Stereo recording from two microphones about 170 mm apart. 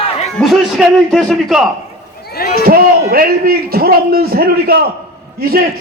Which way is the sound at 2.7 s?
60° right (ahead or behind).